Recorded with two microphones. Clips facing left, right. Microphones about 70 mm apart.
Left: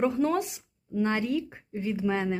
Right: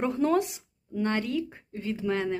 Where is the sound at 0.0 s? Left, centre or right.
Centre.